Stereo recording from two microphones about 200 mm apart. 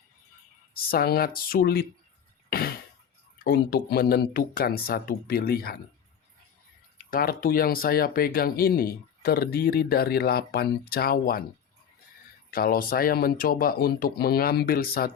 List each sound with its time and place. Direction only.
0.7 s speech: 50° left (ahead or behind)
2.5 s throat clearing: 50° left (ahead or behind)
3.3 s speech: 50° left (ahead or behind)
7.0 s speech: 45° left (ahead or behind)
12.5 s speech: 45° left (ahead or behind)